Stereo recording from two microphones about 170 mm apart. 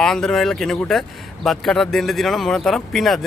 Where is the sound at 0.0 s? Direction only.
5° left (ahead or behind).